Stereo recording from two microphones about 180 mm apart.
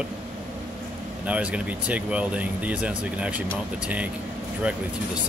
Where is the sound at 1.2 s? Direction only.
5° right (ahead or behind).